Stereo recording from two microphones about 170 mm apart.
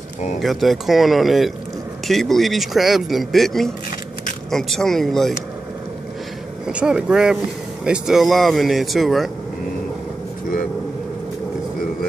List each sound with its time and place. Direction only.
0.4 s speech: centre (ahead or behind)
6.7 s speech: 5° right (ahead or behind)